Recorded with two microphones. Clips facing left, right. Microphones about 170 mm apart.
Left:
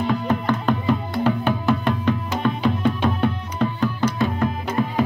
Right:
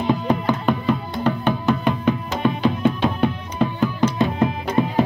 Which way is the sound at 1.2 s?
5° left (ahead or behind).